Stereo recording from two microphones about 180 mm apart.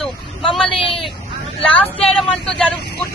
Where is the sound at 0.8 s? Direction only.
30° left (ahead or behind).